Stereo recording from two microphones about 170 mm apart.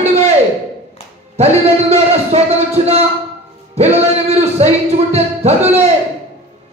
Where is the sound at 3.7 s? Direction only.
40° right (ahead or behind).